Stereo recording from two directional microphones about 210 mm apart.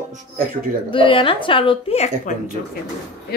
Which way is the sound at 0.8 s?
25° left (ahead or behind).